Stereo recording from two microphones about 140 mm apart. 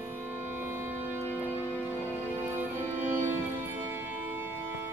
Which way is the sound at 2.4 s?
15° right (ahead or behind).